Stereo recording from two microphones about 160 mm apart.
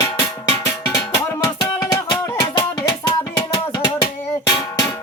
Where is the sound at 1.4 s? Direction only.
20° left (ahead or behind).